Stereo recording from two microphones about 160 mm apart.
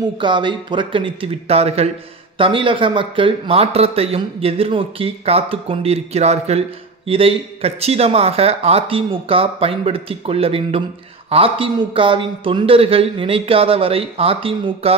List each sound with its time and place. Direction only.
0.2 s a man's voice: 30° right (ahead or behind)